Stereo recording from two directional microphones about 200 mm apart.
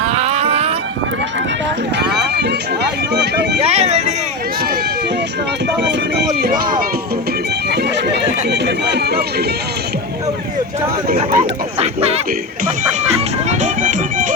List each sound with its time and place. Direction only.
0.0 s vehicle: 30° right (ahead or behind)
2.0 s run: 55° right (ahead or behind)
3.6 s a sound: 30° right (ahead or behind)
7.7 s bagpipes: 60° right (ahead or behind)
11.2 s a sound: 35° right (ahead or behind)
13.5 s music: 40° right (ahead or behind)